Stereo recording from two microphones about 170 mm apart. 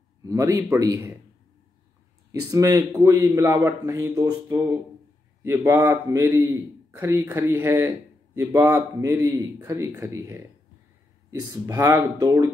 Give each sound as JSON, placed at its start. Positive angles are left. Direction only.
{"t": 0.2, "sound": "a man's voice", "side_deg": -20}
{"t": 2.5, "sound": "a man's voice", "side_deg": -20}